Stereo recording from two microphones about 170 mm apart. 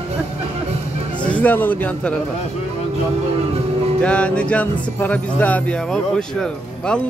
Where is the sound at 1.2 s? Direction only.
10° left (ahead or behind).